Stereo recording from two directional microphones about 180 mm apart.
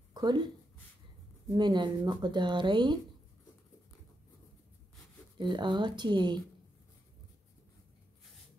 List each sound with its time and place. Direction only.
0.1 s a sound: 20° right (ahead or behind)
1.5 s speech: 25° right (ahead or behind)
5.4 s speech: 25° right (ahead or behind)